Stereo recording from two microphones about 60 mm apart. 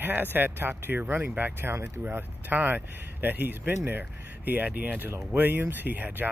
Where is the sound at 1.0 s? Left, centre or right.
Right.